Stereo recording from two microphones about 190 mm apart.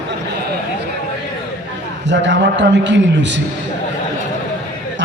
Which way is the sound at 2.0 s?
70° right (ahead or behind).